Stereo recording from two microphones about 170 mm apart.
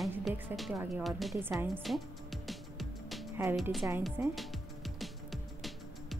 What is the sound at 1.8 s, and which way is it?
Music, centre (ahead or behind).